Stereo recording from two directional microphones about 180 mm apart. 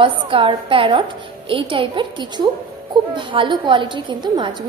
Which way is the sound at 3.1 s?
25° right (ahead or behind).